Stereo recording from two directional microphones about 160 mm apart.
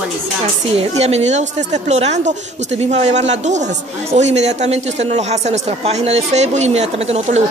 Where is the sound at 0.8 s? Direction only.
40° right (ahead or behind).